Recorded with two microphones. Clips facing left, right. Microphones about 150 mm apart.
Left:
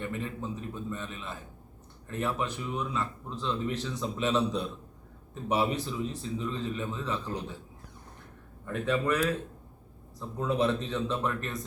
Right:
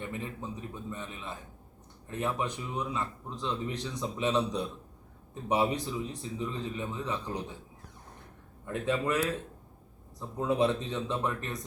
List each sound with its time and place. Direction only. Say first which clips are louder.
0.0 s speech: left 3 dB; 20° right (ahead or behind)
8.6 s speech: left 1 dB; 20° right (ahead or behind)